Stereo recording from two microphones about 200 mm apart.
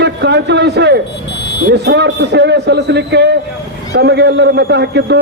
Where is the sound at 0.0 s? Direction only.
60° right (ahead or behind).